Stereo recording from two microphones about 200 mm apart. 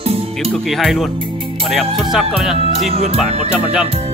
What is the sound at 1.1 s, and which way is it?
Music, 25° right (ahead or behind).